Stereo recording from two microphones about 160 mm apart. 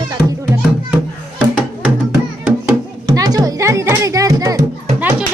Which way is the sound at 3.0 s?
25° right (ahead or behind).